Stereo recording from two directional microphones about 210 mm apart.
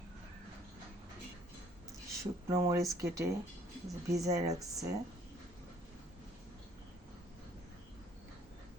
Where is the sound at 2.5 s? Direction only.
15° right (ahead or behind).